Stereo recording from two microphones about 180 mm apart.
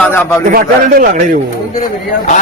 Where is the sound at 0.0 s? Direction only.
10° left (ahead or behind).